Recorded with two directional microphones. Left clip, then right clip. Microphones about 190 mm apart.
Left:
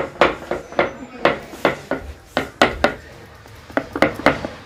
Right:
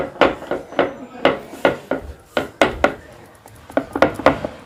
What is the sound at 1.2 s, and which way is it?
Dishes, 15° right (ahead or behind).